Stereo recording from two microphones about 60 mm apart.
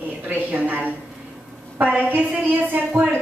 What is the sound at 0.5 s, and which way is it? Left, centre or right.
A woman's voice, right.